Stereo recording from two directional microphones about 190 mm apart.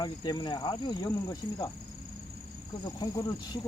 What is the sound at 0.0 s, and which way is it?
Speech, 20° left (ahead or behind).